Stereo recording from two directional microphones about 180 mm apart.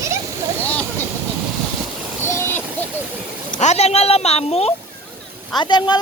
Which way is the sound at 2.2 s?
15° left (ahead or behind).